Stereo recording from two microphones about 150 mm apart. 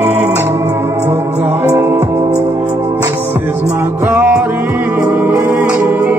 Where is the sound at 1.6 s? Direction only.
15° right (ahead or behind).